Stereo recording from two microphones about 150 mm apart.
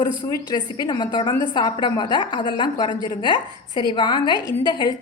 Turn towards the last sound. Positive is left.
turn(degrees=30)  # may be behind; listen again after turning